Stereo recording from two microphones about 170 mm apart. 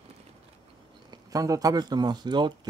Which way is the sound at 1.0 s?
20° right (ahead or behind).